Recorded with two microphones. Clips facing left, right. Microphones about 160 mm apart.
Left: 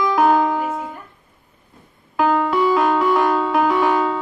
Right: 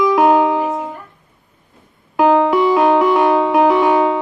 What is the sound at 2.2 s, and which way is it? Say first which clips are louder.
Music: right 5 dB; 15° right (ahead or behind).